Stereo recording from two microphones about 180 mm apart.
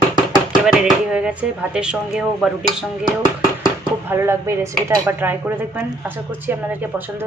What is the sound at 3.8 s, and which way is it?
Speech, 10° right (ahead or behind).